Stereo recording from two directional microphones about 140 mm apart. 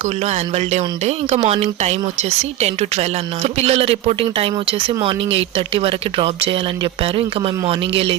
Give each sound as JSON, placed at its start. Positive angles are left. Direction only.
{"t": 0.5, "sound": "speech", "side_deg": -55}
{"t": 7.7, "sound": "speech", "side_deg": -40}